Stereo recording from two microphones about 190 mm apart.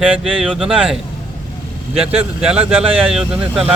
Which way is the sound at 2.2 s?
5° right (ahead or behind).